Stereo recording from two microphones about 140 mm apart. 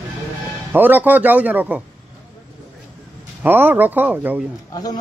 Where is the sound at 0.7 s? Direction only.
15° right (ahead or behind).